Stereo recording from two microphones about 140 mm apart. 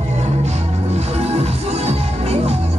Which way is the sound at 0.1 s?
55° right (ahead or behind).